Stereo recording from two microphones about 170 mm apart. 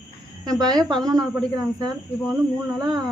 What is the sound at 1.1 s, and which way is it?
Speech, 20° right (ahead or behind).